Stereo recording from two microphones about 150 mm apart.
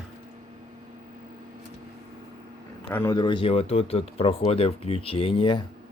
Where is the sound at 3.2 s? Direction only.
35° left (ahead or behind).